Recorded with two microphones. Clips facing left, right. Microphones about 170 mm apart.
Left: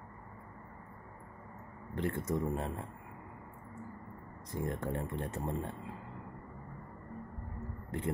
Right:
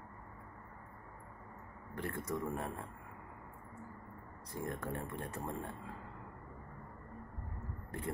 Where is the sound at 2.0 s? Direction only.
20° left (ahead or behind).